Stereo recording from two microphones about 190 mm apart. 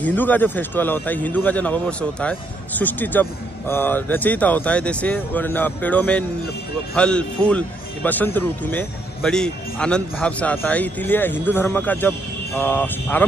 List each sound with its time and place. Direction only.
0.0 s a man's voice: 10° left (ahead or behind)